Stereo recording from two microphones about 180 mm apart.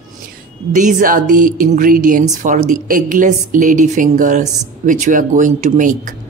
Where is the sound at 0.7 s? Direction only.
45° right (ahead or behind).